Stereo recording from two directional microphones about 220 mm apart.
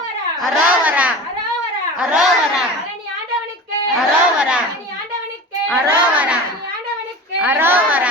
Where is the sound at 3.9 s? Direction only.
5° right (ahead or behind).